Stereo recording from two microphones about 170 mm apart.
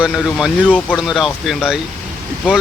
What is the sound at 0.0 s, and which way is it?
Speech, centre (ahead or behind).